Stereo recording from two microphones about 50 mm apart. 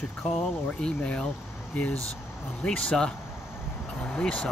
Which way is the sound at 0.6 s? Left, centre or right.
Left.